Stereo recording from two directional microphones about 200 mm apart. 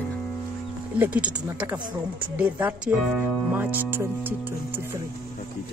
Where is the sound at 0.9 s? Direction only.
10° right (ahead or behind).